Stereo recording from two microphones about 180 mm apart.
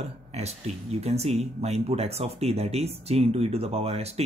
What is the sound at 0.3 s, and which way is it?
Speech, 35° right (ahead or behind).